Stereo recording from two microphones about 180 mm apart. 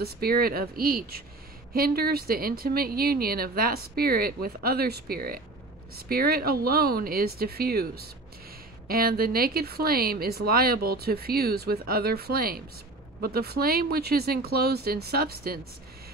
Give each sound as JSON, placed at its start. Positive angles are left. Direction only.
{"t": 0.0, "sound": "speech", "side_deg": -60}